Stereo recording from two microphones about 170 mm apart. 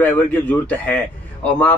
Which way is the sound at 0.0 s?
10° left (ahead or behind).